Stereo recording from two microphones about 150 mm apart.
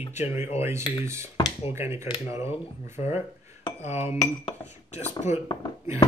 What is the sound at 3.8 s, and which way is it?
Speech, 45° left (ahead or behind).